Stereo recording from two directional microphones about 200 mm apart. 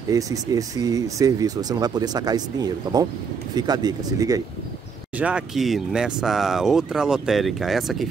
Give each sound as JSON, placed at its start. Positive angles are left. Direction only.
{"t": 0.1, "sound": "speech", "side_deg": -15}
{"t": 5.2, "sound": "speech", "side_deg": -5}